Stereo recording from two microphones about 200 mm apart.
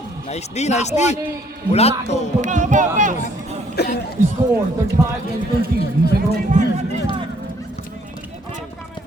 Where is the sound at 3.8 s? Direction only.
55° left (ahead or behind).